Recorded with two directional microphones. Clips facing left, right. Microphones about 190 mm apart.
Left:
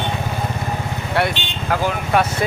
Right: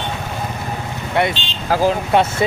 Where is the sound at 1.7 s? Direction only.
30° right (ahead or behind).